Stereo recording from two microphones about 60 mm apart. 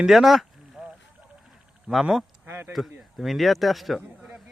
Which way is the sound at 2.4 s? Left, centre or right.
Right.